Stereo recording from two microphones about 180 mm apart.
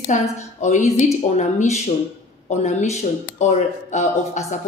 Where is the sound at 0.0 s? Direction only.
40° left (ahead or behind).